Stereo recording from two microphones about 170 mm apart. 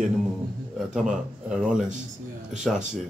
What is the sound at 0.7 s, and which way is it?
Speech, 5° right (ahead or behind).